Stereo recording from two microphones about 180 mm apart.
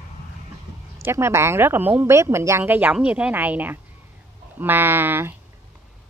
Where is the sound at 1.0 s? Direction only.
15° right (ahead or behind).